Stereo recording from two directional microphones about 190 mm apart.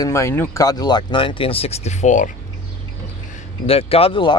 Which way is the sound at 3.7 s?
30° left (ahead or behind).